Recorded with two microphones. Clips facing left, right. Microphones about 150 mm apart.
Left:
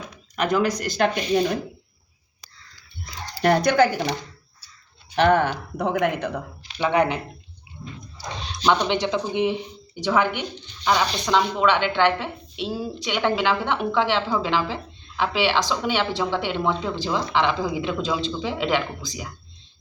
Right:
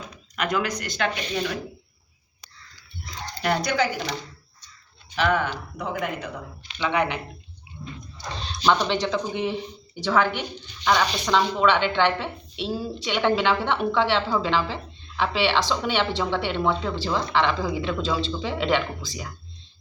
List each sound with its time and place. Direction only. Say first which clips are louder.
0.3 s speech: left 3 dB; 30° left (ahead or behind)
0.8 s speech: left 5 dB; 40° left (ahead or behind)
3.4 s speech: left 6 dB; 50° left (ahead or behind)
5.1 s speech: left 5 dB; 60° left (ahead or behind)
6.7 s speech: left 4 dB; 40° left (ahead or behind)
8.6 s speech: left 1 dB; centre (ahead or behind)
8.9 s a woman's voice: left 1 dB; 20° left (ahead or behind)